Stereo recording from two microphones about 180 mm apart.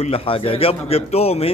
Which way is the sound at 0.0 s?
30° left (ahead or behind).